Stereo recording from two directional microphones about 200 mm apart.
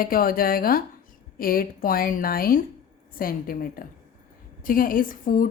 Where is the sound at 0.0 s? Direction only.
45° left (ahead or behind).